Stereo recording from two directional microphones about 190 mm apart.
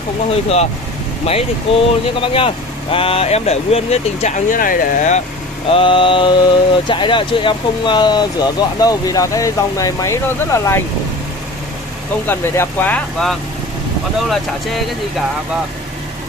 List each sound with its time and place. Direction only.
1.2 s speech: 30° left (ahead or behind)
5.7 s speech: 30° left (ahead or behind)
12.3 s speech: 10° left (ahead or behind)